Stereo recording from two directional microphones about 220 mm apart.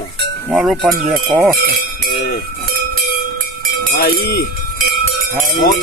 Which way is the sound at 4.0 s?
45° left (ahead or behind).